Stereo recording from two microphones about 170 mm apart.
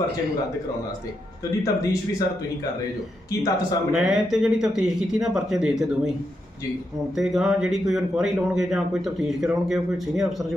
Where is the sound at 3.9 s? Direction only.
5° right (ahead or behind).